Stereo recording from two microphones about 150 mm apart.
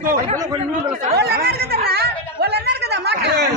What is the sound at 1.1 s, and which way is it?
Speech, 90° right.